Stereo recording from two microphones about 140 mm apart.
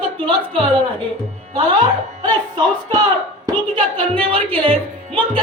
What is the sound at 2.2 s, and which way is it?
A woman's voice, 30° right (ahead or behind).